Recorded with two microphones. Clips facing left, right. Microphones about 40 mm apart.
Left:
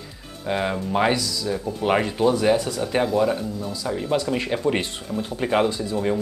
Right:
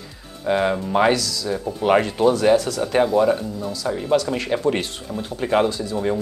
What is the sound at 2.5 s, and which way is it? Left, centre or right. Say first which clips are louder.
Speech: right 4 dB; centre.